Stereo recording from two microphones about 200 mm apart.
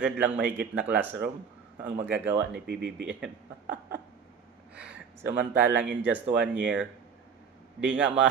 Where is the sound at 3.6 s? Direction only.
60° right (ahead or behind).